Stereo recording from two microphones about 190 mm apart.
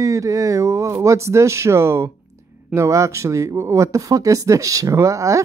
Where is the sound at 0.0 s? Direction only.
15° right (ahead or behind).